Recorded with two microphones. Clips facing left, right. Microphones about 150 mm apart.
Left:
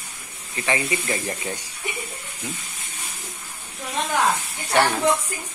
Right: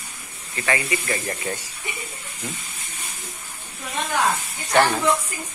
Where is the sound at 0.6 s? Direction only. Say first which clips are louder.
Even; 20° left (ahead or behind).